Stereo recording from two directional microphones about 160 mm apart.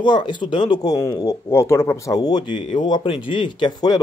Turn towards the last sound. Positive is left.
turn(degrees=25)  # may be behind; listen again after turning